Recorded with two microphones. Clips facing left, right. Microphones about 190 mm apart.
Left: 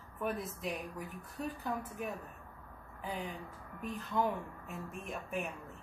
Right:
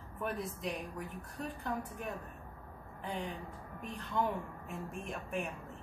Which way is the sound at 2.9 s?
5° left (ahead or behind).